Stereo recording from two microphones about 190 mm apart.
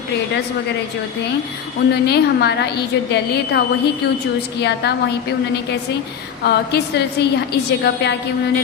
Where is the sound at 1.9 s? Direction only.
60° left (ahead or behind).